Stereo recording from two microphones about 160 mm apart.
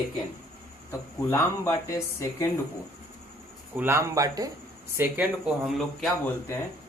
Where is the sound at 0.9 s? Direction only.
15° left (ahead or behind).